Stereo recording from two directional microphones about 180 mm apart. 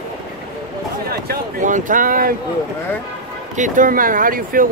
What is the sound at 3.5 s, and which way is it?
Speech, 45° right (ahead or behind).